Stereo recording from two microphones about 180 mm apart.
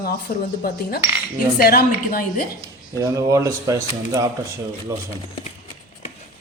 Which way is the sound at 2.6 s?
15° right (ahead or behind).